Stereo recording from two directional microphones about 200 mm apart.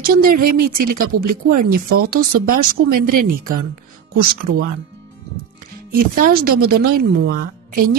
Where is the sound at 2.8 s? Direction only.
75° right (ahead or behind).